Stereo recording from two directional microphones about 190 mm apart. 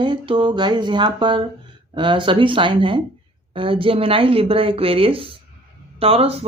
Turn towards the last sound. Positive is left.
turn(degrees=-30)  # may be behind; listen again after turning